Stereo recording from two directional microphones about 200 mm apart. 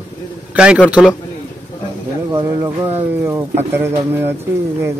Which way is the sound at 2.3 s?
15° right (ahead or behind).